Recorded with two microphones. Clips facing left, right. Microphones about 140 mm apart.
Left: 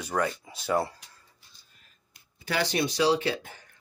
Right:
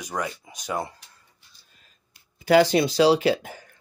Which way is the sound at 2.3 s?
90° right.